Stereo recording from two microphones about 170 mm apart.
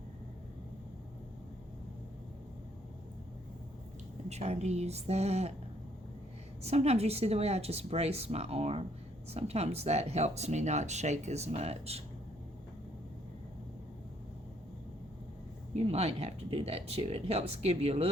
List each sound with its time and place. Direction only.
4.3 s speech: 40° right (ahead or behind)
6.6 s speech: 40° right (ahead or behind)
15.7 s speech: 35° right (ahead or behind)